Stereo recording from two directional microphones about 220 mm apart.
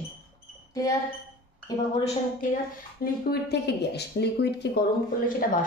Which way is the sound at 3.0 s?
50° left (ahead or behind).